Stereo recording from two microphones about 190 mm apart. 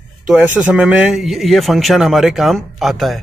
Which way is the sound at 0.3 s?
5° right (ahead or behind).